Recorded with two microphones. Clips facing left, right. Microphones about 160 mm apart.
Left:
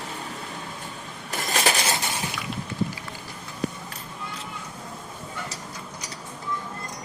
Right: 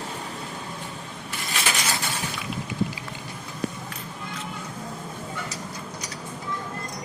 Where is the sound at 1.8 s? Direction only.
20° left (ahead or behind).